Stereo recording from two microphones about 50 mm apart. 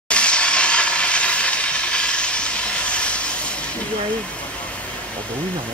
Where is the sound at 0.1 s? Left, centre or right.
Left.